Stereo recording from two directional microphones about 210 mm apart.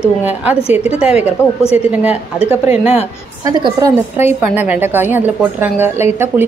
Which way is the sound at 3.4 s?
15° right (ahead or behind).